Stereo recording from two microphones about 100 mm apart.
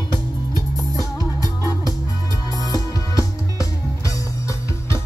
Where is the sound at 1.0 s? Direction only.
35° left (ahead or behind).